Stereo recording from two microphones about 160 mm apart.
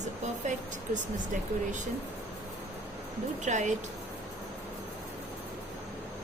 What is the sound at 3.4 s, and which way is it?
Speech, 50° right (ahead or behind).